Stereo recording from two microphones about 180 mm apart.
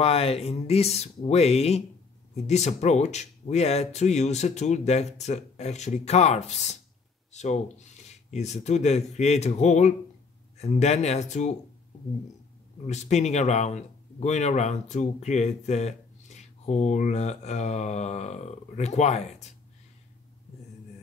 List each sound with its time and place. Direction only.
0.0 s speech: 35° left (ahead or behind)
12.8 s speech: 40° left (ahead or behind)